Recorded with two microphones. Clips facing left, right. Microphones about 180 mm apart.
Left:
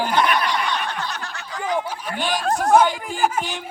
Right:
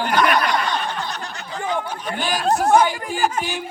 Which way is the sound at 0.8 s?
15° right (ahead or behind).